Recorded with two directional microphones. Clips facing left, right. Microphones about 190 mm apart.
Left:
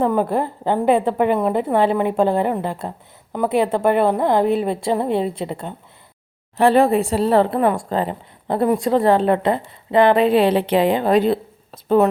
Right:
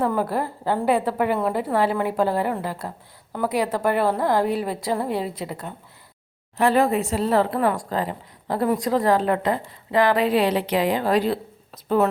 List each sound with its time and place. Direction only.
0.0 s speech: 20° left (ahead or behind)